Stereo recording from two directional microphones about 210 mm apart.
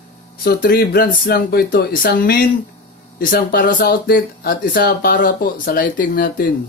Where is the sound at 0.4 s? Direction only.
45° left (ahead or behind).